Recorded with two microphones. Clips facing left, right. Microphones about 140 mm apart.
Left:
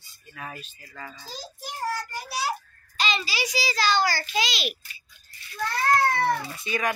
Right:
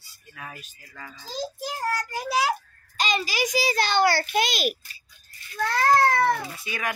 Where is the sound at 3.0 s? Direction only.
45° right (ahead or behind).